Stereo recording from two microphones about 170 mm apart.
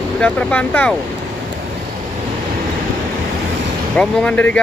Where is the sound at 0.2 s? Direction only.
5° left (ahead or behind).